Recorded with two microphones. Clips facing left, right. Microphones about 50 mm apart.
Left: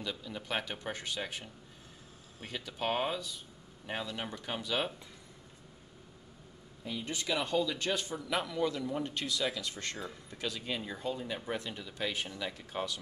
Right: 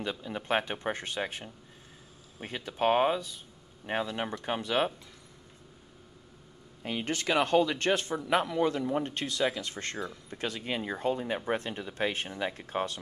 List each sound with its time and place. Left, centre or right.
0.0 s speech: right
6.8 s a man's voice: right
8.2 s speech: right